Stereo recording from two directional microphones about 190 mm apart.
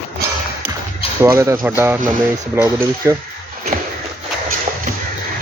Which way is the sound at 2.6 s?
15° right (ahead or behind).